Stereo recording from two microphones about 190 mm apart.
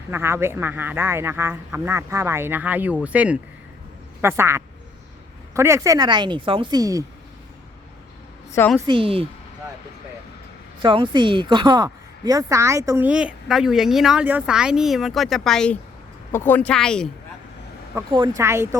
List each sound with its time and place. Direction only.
0.1 s a woman's voice: 15° right (ahead or behind)
8.5 s a woman's voice: 10° left (ahead or behind)
8.9 s a woman's voice: 30° right (ahead or behind)
10.8 s a woman's voice: 25° right (ahead or behind); by 17.1 s 5° left (ahead or behind)
18.1 s speech: 20° right (ahead or behind)